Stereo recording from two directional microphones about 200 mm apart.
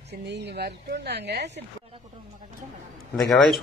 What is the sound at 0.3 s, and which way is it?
Speech, 55° right (ahead or behind).